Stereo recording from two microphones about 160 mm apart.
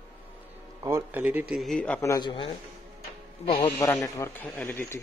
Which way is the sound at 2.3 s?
30° left (ahead or behind).